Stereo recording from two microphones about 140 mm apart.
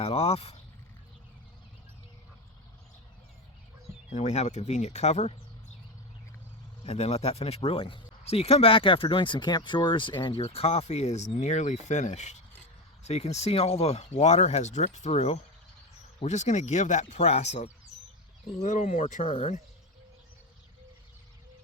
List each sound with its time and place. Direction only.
0.0 s speech: 45° left (ahead or behind)
4.1 s speech: 55° left (ahead or behind)
6.8 s speech: 50° left (ahead or behind)